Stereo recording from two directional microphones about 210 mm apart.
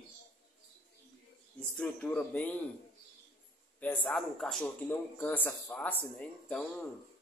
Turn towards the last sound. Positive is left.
turn(degrees=5)  # may be behind; listen again after turning